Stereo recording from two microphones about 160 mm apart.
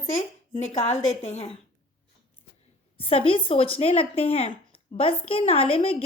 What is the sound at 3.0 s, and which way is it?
A woman's voice, 35° left (ahead or behind).